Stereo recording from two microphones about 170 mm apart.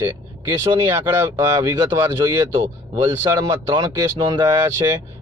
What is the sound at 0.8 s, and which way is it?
Speech, 20° right (ahead or behind).